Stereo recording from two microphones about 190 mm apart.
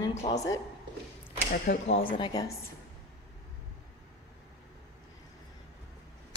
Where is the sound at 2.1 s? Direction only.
20° left (ahead or behind).